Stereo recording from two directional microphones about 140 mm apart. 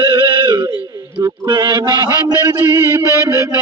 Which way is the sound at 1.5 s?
35° right (ahead or behind).